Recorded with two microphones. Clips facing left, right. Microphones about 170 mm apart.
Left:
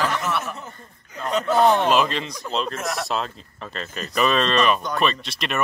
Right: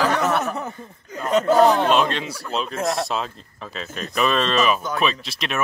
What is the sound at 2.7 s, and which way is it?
Speech, 25° right (ahead or behind).